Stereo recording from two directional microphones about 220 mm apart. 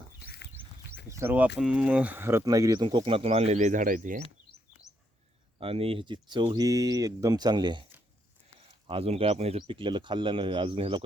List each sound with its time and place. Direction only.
0.3 s a sound: 50° left (ahead or behind)
1.1 s speech: 10° right (ahead or behind); by 4.2 s 35° right (ahead or behind)
5.5 s speech: 25° right (ahead or behind)
8.9 s speech: 25° right (ahead or behind)